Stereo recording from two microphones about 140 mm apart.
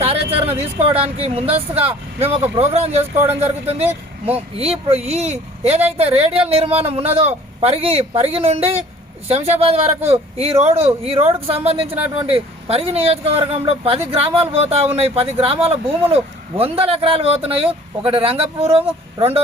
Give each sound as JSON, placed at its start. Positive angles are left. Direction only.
{"t": 0.0, "sound": "speech", "side_deg": -45}